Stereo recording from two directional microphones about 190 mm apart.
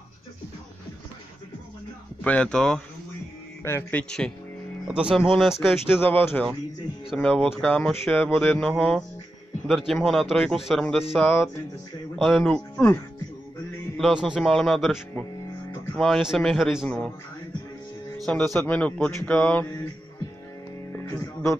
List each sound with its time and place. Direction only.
2.2 s speech: 5° left (ahead or behind)
4.8 s speech: 5° right (ahead or behind)
5.9 s speech: 10° left (ahead or behind)
18.2 s speech: 5° left (ahead or behind)
21.0 s speech: 15° left (ahead or behind)